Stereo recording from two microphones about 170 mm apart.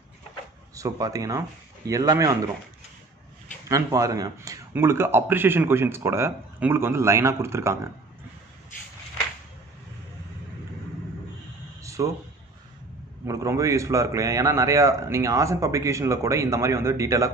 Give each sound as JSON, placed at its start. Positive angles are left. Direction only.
{"t": 0.7, "sound": "speech", "side_deg": -20}
{"t": 3.6, "sound": "a man's voice", "side_deg": -20}
{"t": 11.8, "sound": "a sound", "side_deg": -20}
{"t": 13.2, "sound": "a man's voice", "side_deg": -15}